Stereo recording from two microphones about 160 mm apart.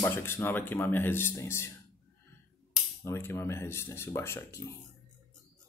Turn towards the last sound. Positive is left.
turn(degrees=15)  # may be behind; listen again after turning